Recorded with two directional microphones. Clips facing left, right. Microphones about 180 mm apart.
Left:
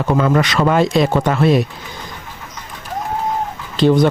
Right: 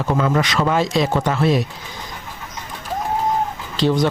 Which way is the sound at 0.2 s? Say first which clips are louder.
Left 4 dB; 60° left (ahead or behind).